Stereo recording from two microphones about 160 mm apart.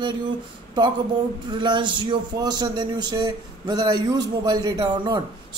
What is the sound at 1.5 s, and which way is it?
A man's voice, 30° right (ahead or behind).